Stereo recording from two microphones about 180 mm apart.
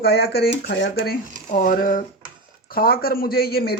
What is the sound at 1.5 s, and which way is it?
Speech, 50° left (ahead or behind).